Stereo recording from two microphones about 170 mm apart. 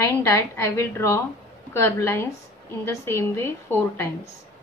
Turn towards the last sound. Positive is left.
turn(degrees=15)  # may be behind; listen again after turning